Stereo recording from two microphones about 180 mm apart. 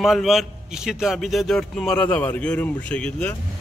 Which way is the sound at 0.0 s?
Centre (ahead or behind).